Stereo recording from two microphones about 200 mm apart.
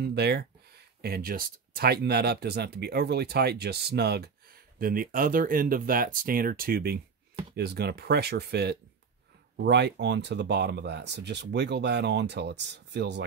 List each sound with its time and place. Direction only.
0.0 s speech: 55° right (ahead or behind)